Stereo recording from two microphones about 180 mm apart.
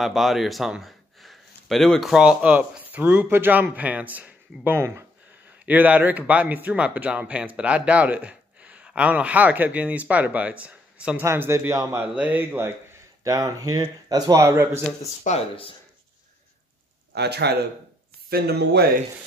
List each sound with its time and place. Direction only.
0.0 s speech: centre (ahead or behind); by 14.7 s 20° right (ahead or behind)
15.2 s speech: 35° left (ahead or behind)
17.1 s speech: 65° right (ahead or behind)